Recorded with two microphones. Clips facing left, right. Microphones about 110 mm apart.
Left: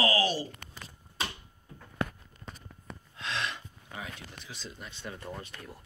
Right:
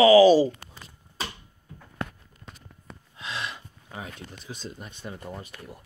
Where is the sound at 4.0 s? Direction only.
45° right (ahead or behind).